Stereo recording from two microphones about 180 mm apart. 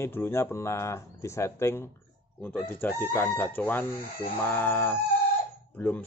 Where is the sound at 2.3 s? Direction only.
5° left (ahead or behind).